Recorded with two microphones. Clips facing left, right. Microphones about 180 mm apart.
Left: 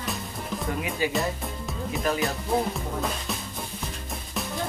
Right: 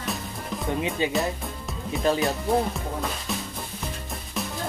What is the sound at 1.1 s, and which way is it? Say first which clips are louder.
Music: right 1 dB; centre (ahead or behind).